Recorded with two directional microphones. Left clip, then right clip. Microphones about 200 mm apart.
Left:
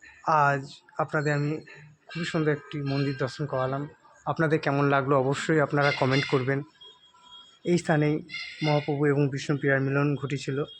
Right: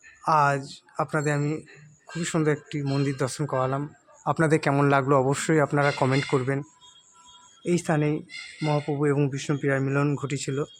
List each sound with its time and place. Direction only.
0.2 s speech: 15° right (ahead or behind)